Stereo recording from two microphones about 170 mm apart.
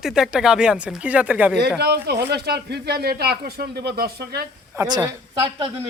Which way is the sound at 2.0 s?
75° right (ahead or behind).